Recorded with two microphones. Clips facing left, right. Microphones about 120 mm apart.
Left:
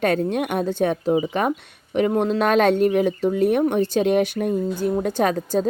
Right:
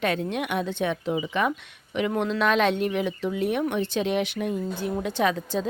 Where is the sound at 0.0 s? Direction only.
45° left (ahead or behind).